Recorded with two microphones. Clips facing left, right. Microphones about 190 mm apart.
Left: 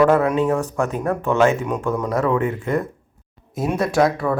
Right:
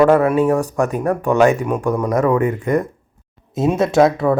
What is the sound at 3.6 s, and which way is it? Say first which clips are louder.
Speech: right 5 dB; 25° right (ahead or behind).